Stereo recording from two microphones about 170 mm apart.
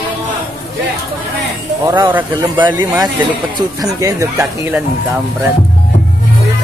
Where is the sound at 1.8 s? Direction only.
25° right (ahead or behind).